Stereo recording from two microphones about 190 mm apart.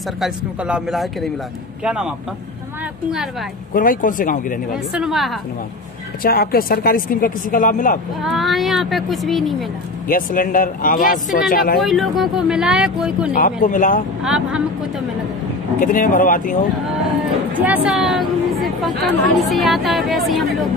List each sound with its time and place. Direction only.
0.2 s a woman's voice: 5° right (ahead or behind)
3.7 s speech: 45° left (ahead or behind)
4.9 s a woman's voice: centre (ahead or behind)
6.2 s speech: 50° left (ahead or behind)
8.2 s a woman's voice: centre (ahead or behind)
10.0 s speech: 45° left (ahead or behind)
11.8 s a woman's voice: centre (ahead or behind)
13.3 s speech: 45° left (ahead or behind)
14.2 s a woman's voice: 5° right (ahead or behind)
15.8 s speech: 45° left (ahead or behind)
17.6 s a woman's voice: 10° right (ahead or behind)